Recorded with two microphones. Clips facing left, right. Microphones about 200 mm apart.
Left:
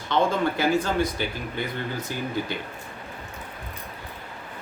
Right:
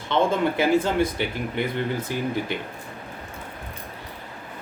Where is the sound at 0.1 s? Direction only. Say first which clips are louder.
Right 1 dB; 25° right (ahead or behind).